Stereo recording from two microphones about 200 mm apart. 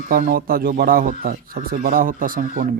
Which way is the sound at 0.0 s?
45° right (ahead or behind).